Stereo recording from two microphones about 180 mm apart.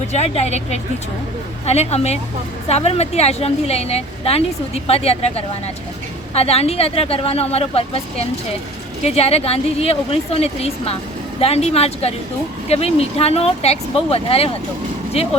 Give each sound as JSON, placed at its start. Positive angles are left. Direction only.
{"t": 0.1, "sound": "speech", "side_deg": 35}